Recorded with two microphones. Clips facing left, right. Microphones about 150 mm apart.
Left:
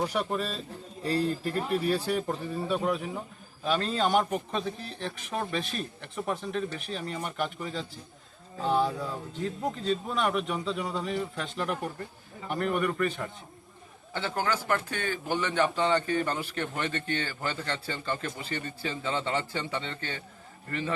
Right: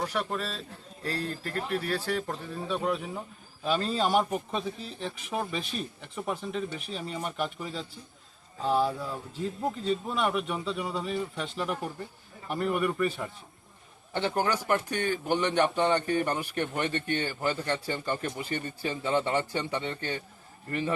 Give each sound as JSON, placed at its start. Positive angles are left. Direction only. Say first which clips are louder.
{"t": 0.0, "sound": "a man's voice", "louder": "left 2 dB", "side_deg": 10}
{"t": 14.1, "sound": "a man's voice", "louder": "right 2 dB", "side_deg": -20}